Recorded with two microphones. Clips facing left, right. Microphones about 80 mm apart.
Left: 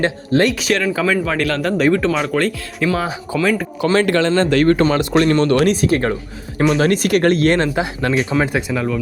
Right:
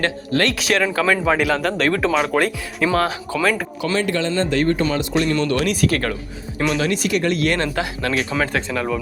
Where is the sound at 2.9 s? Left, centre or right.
Centre.